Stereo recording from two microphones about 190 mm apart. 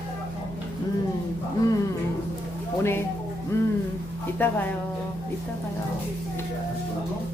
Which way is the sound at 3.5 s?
15° left (ahead or behind).